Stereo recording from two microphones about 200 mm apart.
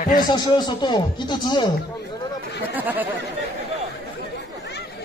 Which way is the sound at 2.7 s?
10° right (ahead or behind).